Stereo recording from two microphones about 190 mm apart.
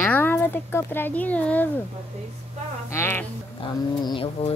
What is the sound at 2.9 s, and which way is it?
Speech, 10° left (ahead or behind).